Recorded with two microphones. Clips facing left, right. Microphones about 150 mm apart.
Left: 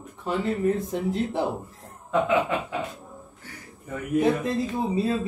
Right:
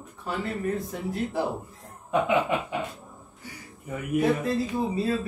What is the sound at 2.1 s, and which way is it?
Chuckle, 20° right (ahead or behind).